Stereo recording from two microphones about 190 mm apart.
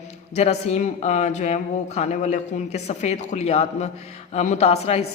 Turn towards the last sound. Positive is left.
turn(degrees=35)  # may be behind; listen again after turning